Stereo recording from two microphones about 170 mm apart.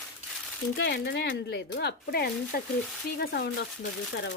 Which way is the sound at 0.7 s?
80° left.